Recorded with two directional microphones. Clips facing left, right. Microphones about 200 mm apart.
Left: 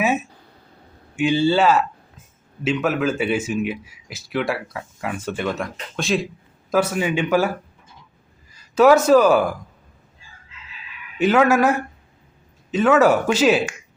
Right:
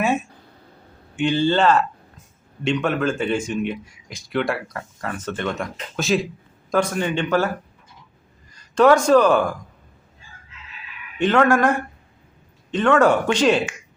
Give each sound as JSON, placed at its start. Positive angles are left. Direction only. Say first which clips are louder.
{"t": 0.0, "sound": "a sound", "louder": "even", "side_deg": 5}
{"t": 1.1, "sound": "speech", "louder": "left 1 dB", "side_deg": 10}
{"t": 8.5, "sound": "speech", "louder": "left 1 dB", "side_deg": 5}
{"t": 11.2, "sound": "speech", "louder": "left 1 dB", "side_deg": 5}